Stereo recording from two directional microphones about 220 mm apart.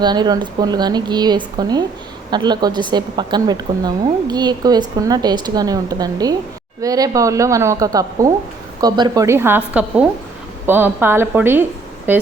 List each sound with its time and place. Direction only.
0.0 s a woman's voice: 20° right (ahead or behind)